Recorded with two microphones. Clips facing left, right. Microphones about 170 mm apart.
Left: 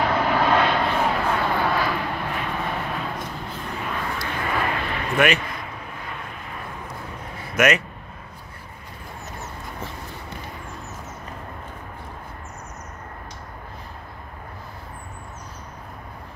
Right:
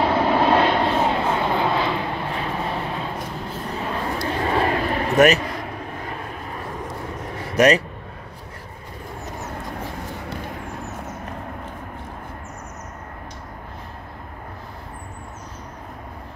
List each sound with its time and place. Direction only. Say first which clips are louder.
0.0 s vehicle: right 3 dB; 25° right (ahead or behind)
7.5 s speech: right 4 dB; 35° right (ahead or behind)